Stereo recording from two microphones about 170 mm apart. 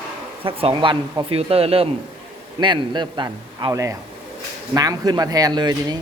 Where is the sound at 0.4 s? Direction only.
30° right (ahead or behind).